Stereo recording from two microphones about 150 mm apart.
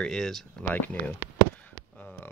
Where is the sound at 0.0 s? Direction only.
5° left (ahead or behind).